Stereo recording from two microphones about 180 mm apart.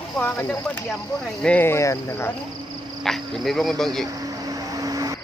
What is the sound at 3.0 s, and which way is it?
Speech, centre (ahead or behind).